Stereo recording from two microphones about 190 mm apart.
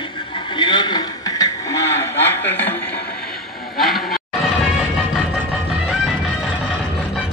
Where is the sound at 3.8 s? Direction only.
Centre (ahead or behind).